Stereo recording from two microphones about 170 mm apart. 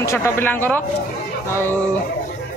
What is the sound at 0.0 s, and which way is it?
Speech, 15° left (ahead or behind).